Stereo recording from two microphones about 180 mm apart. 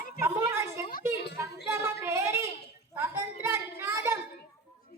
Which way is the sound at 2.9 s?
15° right (ahead or behind).